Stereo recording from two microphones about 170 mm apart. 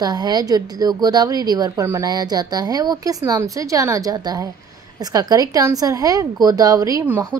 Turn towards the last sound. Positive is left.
turn(degrees=-15)  # may be behind; listen again after turning